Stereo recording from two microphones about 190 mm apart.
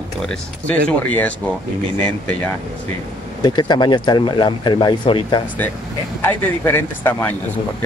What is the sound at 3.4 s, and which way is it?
Speech, 25° left (ahead or behind).